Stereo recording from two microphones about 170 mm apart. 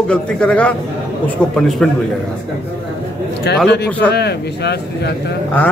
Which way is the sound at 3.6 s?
80° left.